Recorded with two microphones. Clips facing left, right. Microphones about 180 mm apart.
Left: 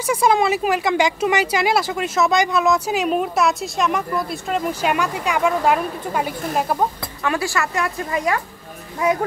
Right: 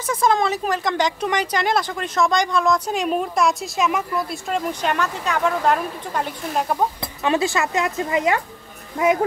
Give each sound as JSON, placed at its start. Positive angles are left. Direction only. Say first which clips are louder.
{"t": 0.0, "sound": "speech", "louder": "left 2 dB", "side_deg": 10}
{"t": 7.2, "sound": "speech", "louder": "right 2 dB", "side_deg": -20}